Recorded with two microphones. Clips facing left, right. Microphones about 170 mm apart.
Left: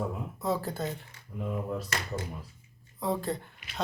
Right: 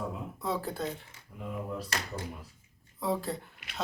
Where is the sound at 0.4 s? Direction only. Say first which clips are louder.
Left 2 dB; centre (ahead or behind).